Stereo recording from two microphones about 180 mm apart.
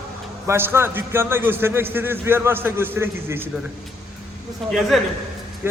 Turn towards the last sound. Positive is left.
turn(degrees=0)  # may be behind; listen again after turning